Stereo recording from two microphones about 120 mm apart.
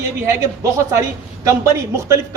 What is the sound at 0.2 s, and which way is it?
Speech, 25° right (ahead or behind).